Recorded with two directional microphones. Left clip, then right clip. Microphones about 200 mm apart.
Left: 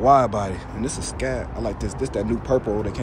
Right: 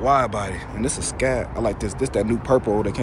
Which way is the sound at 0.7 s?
10° left (ahead or behind).